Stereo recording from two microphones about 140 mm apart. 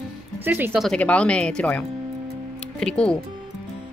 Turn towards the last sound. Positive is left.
turn(degrees=5)  # may be behind; listen again after turning